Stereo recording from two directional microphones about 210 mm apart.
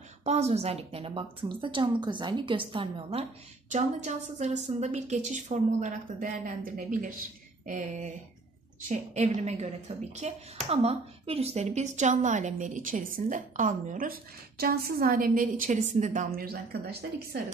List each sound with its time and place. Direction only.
0.2 s a woman's voice: 30° right (ahead or behind)